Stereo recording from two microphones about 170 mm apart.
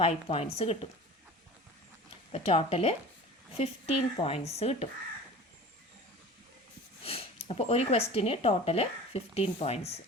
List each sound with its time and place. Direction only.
0.0 s speech: 35° left (ahead or behind)
2.3 s speech: 35° left (ahead or behind)
7.0 s speech: 35° left (ahead or behind)